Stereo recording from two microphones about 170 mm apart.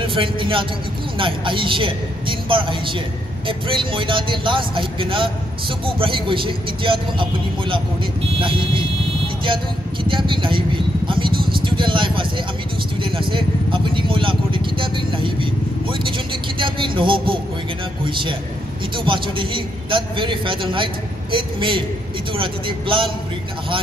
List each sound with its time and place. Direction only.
0.0 s a man's voice: 30° right (ahead or behind)
8.4 s speech: 30° right (ahead or behind)
10.0 s vehicle: 30° right (ahead or behind)
13.0 s a man's voice: 30° right (ahead or behind)
19.0 s a man's voice: 30° right (ahead or behind)